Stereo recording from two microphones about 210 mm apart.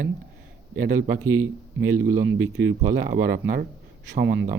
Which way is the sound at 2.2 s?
65° right (ahead or behind).